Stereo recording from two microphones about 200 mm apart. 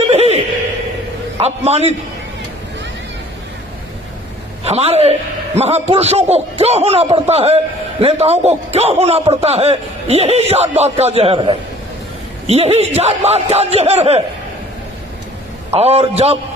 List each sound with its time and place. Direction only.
0.1 s a sound: 30° right (ahead or behind)
1.4 s a man's voice: 30° right (ahead or behind)
4.6 s a man's voice: 30° right (ahead or behind)
15.7 s a man's voice: 30° right (ahead or behind)